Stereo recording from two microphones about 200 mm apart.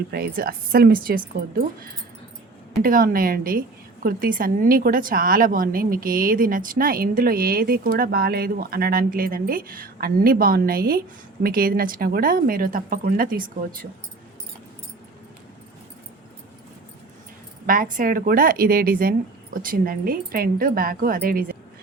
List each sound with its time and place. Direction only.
0.3 s a woman's voice: 50° right (ahead or behind)
17.9 s a woman's voice: 45° right (ahead or behind)